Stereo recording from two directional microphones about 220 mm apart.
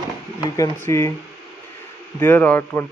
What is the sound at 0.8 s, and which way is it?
Speech, 10° left (ahead or behind).